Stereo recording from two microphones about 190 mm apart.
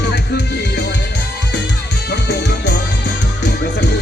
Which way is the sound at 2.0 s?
65° left (ahead or behind).